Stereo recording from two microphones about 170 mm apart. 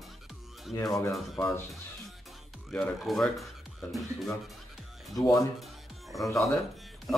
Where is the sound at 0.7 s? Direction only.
20° left (ahead or behind).